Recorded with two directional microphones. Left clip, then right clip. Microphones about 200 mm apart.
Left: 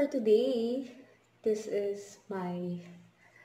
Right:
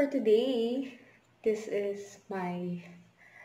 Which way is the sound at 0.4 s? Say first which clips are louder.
Right 1 dB; 20° right (ahead or behind).